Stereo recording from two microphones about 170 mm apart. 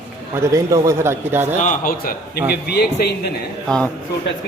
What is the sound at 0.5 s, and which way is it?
A man's voice, 20° right (ahead or behind).